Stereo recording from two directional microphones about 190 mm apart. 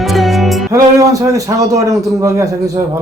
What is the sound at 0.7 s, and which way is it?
A man's voice, 15° right (ahead or behind).